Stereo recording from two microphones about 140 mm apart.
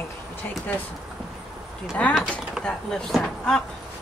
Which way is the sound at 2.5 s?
5° left (ahead or behind).